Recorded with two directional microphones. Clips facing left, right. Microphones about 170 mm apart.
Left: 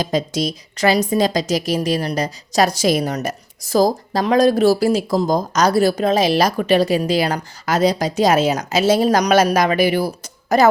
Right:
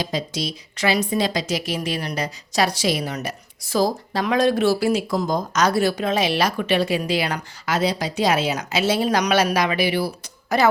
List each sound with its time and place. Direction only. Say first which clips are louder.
0.0 s a woman's voice: left 6 dB; 45° left (ahead or behind)